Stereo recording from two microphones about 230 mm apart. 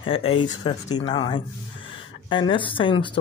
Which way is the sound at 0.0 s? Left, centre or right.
Left.